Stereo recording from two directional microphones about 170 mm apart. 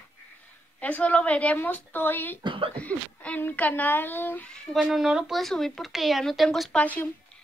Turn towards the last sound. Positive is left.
turn(degrees=10)  # may be behind; listen again after turning